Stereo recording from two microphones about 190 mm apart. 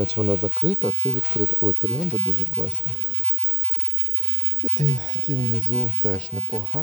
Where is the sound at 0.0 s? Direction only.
25° right (ahead or behind).